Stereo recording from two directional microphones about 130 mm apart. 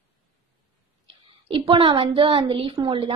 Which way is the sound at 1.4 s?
45° right (ahead or behind).